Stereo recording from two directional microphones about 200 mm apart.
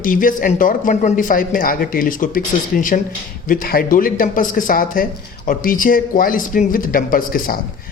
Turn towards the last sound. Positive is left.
turn(degrees=45)  # may be behind; listen again after turning